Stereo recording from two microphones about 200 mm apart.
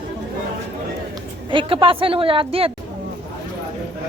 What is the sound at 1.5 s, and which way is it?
A woman's voice, 25° right (ahead or behind).